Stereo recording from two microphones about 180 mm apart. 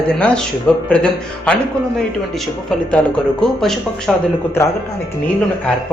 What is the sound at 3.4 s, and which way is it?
Speech, centre (ahead or behind).